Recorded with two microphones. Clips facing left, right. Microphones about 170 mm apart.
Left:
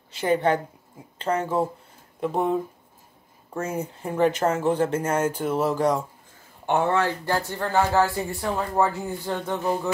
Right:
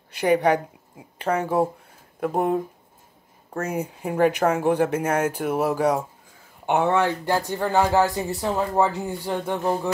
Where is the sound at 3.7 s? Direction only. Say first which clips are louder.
Right 4 dB; 10° right (ahead or behind).